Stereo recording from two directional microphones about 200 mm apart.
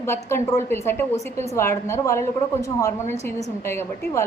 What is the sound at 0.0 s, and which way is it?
A woman's voice, 10° left (ahead or behind).